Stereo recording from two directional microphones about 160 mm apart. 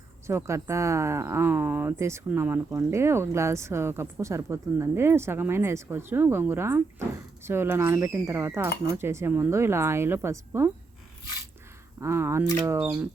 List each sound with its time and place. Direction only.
0.3 s speech: 15° right (ahead or behind)
11.9 s speech: 15° right (ahead or behind)